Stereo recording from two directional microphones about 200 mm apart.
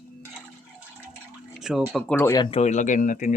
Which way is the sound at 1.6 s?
Centre (ahead or behind).